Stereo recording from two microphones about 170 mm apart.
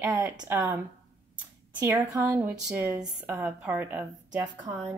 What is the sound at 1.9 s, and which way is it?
A woman's voice, 20° right (ahead or behind).